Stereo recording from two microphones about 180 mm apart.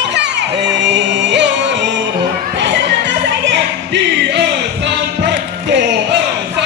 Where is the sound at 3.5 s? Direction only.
80° right.